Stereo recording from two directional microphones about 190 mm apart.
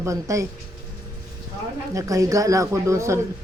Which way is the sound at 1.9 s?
15° right (ahead or behind).